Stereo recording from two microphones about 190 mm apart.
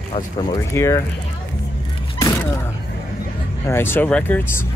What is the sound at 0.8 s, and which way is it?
Speech, 15° left (ahead or behind).